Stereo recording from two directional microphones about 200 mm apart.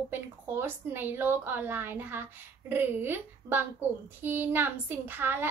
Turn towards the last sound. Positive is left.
turn(degrees=-10)  # may be behind; listen again after turning